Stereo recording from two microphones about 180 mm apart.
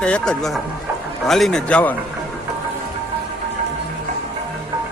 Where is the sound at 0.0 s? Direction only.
5° left (ahead or behind).